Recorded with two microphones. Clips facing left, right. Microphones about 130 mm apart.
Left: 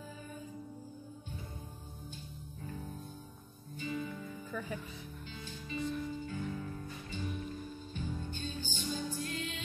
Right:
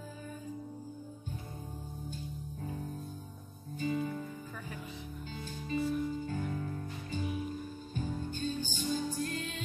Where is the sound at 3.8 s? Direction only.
40° right (ahead or behind).